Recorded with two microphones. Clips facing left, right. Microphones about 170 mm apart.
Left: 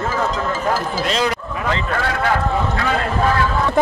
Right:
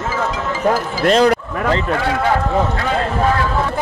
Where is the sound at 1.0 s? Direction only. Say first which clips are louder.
Right 7 dB; 50° right (ahead or behind).